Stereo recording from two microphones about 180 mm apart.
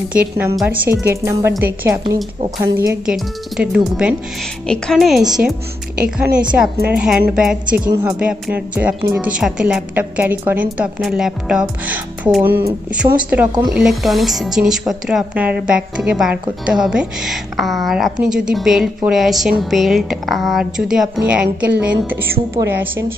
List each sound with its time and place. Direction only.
0.1 s a woman's voice: 10° right (ahead or behind)
3.1 s a woman's voice: 5° right (ahead or behind)
7.9 s a woman's voice: 15° right (ahead or behind)